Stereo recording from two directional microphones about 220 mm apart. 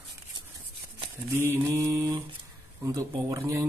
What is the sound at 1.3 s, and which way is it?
Speech, 10° right (ahead or behind).